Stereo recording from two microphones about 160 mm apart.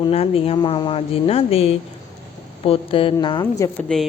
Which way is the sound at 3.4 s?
10° left (ahead or behind).